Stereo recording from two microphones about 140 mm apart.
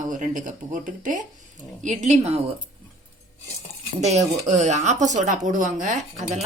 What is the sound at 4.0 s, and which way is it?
Speech, 55° right (ahead or behind).